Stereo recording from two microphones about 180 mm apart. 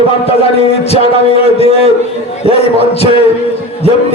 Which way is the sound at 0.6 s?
35° left (ahead or behind).